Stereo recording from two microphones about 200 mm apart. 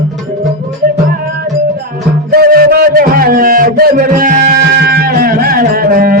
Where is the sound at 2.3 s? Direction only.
50° right (ahead or behind).